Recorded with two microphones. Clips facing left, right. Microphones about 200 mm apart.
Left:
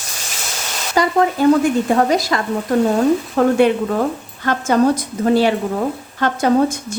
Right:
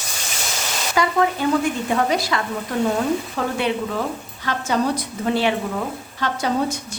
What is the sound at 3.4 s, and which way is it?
A woman's voice, 50° left (ahead or behind).